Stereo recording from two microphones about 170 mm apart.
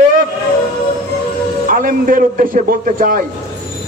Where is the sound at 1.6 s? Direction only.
55° right (ahead or behind).